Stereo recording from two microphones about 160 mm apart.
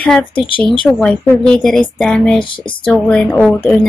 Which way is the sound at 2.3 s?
30° left (ahead or behind).